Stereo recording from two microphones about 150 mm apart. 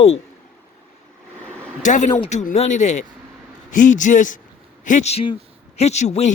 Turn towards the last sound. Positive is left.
turn(degrees=50)  # may be behind; listen again after turning